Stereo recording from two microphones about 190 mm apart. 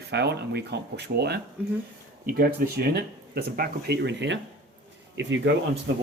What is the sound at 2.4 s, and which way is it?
Speech, 55° right (ahead or behind).